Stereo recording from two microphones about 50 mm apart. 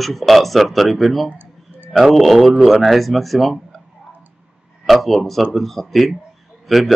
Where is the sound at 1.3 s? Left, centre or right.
Right.